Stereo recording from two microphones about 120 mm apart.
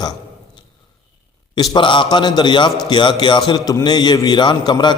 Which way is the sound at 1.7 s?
40° left (ahead or behind).